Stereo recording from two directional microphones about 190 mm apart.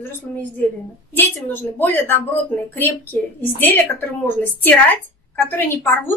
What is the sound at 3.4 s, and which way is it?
A woman's voice, 10° left (ahead or behind).